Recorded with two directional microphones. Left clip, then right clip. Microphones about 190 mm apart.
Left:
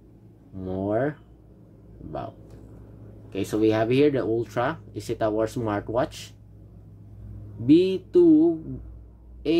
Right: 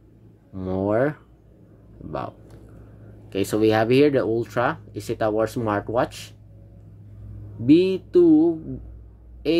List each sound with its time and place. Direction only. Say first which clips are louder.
0.6 s a sound: right 4 dB; 25° right (ahead or behind)
3.3 s speech: right 3 dB; 30° right (ahead or behind)
7.6 s speech: right 2 dB; 15° right (ahead or behind)